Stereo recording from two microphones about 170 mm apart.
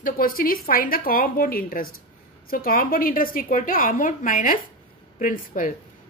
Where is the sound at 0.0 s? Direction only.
55° left (ahead or behind).